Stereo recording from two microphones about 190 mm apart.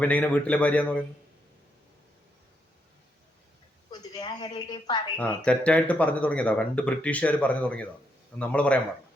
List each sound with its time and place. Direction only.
0.0 s speech: 5° left (ahead or behind)
3.9 s a sound: 20° left (ahead or behind)
5.1 s speech: 5° left (ahead or behind)